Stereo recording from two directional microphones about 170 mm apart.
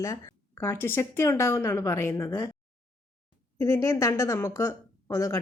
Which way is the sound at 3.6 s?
15° left (ahead or behind).